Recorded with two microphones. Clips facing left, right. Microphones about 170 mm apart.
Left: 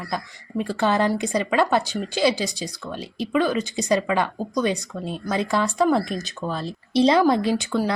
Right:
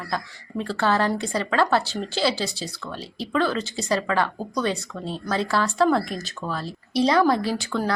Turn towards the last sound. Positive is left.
turn(degrees=15)  # may be behind; listen again after turning